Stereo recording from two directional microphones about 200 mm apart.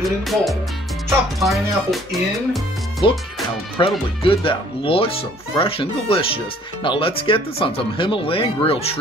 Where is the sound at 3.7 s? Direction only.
25° left (ahead or behind).